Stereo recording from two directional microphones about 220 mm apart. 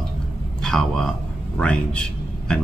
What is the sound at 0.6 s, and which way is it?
A man's voice, centre (ahead or behind).